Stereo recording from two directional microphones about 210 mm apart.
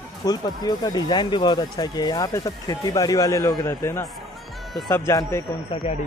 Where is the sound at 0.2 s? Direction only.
20° left (ahead or behind).